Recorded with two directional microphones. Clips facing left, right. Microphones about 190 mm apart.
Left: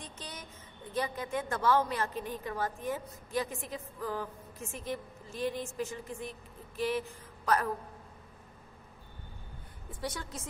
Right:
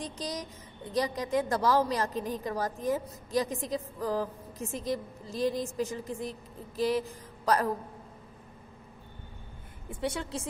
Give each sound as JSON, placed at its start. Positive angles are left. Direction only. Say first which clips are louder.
{"t": 0.0, "sound": "a woman's voice", "louder": "right 9 dB", "side_deg": -35}
{"t": 9.8, "sound": "a woman's voice", "louder": "right 6 dB", "side_deg": -25}